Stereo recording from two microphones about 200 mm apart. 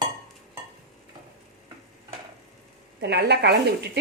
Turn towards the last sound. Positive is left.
turn(degrees=-55)  # may be behind; listen again after turning